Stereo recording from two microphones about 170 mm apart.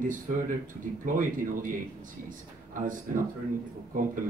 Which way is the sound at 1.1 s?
50° right (ahead or behind).